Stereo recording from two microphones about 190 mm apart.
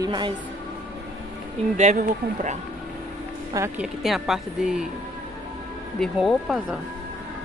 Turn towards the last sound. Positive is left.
turn(degrees=-5)  # may be behind; listen again after turning